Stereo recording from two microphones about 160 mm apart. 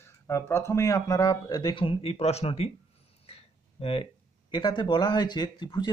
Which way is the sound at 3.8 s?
35° left (ahead or behind).